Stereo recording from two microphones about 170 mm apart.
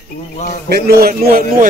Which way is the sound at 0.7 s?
65° right (ahead or behind).